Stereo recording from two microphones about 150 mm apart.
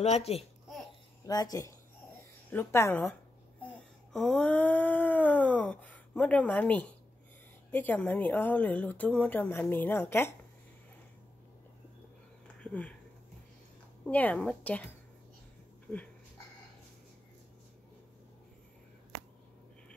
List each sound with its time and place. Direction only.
0.0 s speech: 45° left (ahead or behind)
1.2 s a woman's voice: 25° left (ahead or behind)
4.1 s a sound: 5° left (ahead or behind)
7.7 s a woman's voice: 10° left (ahead or behind)
12.6 s a sound: 10° left (ahead or behind)
14.0 s a woman's voice: 10° left (ahead or behind)